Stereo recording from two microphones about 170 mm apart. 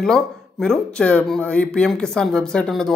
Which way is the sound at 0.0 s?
5° left (ahead or behind).